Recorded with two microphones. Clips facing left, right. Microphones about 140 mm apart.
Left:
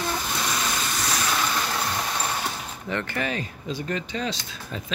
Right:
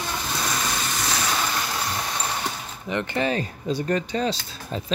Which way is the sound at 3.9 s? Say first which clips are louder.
Right 5 dB; 40° right (ahead or behind).